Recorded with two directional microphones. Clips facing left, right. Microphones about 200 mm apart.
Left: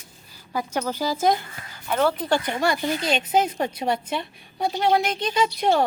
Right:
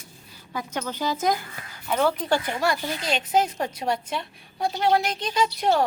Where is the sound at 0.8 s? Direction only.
35° left (ahead or behind).